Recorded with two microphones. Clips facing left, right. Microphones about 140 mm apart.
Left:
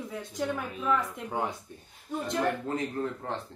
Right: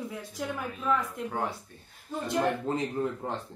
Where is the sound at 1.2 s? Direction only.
15° left (ahead or behind).